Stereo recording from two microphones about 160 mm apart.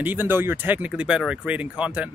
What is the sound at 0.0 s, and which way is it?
Speech, 10° right (ahead or behind).